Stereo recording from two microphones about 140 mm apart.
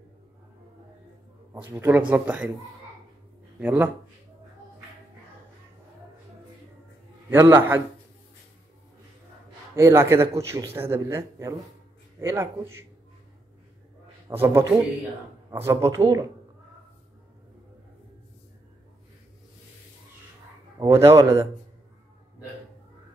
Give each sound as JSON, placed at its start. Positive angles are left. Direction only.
{"t": 1.5, "sound": "speech", "side_deg": -15}
{"t": 3.5, "sound": "speech", "side_deg": -15}
{"t": 7.2, "sound": "speech", "side_deg": -15}
{"t": 9.8, "sound": "a man's voice", "side_deg": -20}
{"t": 14.3, "sound": "a man's voice", "side_deg": -15}
{"t": 20.8, "sound": "a man's voice", "side_deg": -20}